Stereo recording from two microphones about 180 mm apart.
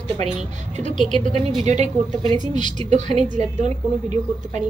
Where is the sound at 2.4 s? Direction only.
25° left (ahead or behind).